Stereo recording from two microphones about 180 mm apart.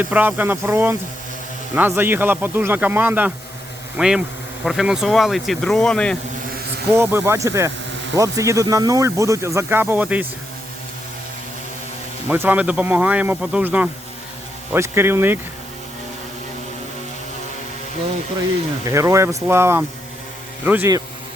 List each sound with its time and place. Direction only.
0.0 s speech: 10° right (ahead or behind)
6.9 s speech: 15° right (ahead or behind)
12.3 s speech: 10° right (ahead or behind)
18.9 s speech: 15° right (ahead or behind)